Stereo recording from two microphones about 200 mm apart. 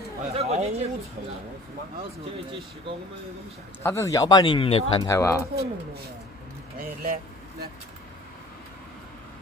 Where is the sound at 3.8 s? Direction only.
15° left (ahead or behind).